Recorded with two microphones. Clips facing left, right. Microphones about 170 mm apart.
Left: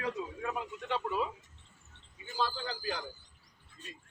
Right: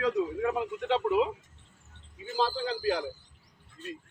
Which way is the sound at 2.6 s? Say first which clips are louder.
Right 9 dB; 70° right (ahead or behind).